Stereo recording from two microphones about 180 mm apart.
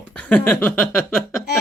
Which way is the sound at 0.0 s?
5° left (ahead or behind).